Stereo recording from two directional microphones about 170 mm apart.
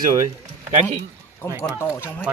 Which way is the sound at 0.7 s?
45° right (ahead or behind).